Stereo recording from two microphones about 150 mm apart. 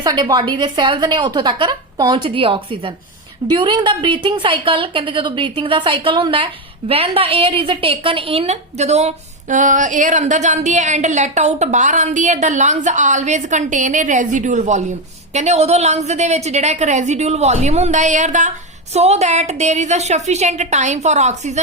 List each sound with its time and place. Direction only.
0.0 s a woman's voice: 25° right (ahead or behind); by 21.6 s 50° right (ahead or behind)